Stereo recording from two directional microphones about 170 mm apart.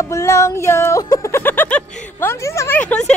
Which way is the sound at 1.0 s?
20° left (ahead or behind).